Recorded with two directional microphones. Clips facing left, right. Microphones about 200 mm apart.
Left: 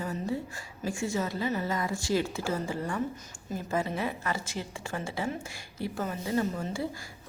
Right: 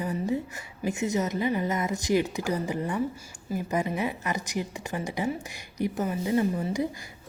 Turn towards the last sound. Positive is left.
turn(degrees=-15)  # may be behind; listen again after turning